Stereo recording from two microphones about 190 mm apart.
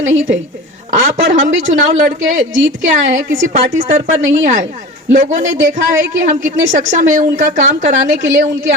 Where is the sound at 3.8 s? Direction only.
45° right (ahead or behind).